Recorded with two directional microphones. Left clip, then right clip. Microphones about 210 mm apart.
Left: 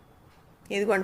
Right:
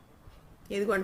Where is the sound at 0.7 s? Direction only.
5° right (ahead or behind).